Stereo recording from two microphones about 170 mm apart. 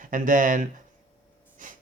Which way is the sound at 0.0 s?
50° right (ahead or behind).